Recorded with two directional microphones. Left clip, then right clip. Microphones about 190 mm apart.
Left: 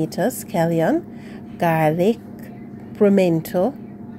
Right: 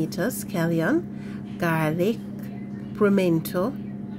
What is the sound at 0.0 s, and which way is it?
A woman's voice, 20° left (ahead or behind).